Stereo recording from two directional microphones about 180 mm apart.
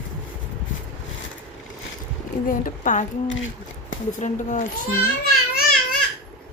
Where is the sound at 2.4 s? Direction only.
45° left (ahead or behind).